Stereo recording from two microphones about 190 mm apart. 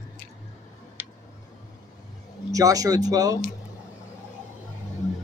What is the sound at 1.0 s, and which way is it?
Tick, 10° right (ahead or behind).